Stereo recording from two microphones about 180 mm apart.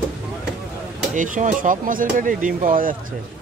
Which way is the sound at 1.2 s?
45° right (ahead or behind).